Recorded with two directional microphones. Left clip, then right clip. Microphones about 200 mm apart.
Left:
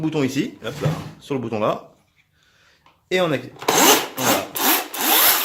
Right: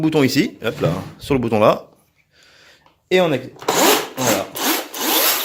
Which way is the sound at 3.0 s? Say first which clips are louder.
Right 4 dB; 30° right (ahead or behind).